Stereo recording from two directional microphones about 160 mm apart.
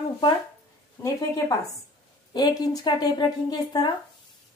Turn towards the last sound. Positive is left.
turn(degrees=25)  # may be behind; listen again after turning